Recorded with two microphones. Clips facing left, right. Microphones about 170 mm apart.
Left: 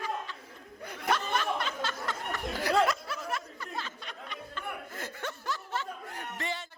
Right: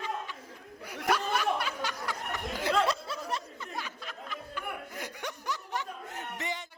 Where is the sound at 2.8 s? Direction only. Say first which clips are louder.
Left 1 dB; 30° right (ahead or behind).